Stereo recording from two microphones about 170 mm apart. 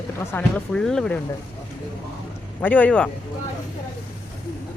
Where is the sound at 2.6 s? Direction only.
10° left (ahead or behind).